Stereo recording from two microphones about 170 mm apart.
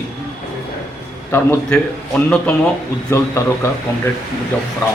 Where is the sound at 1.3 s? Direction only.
10° left (ahead or behind).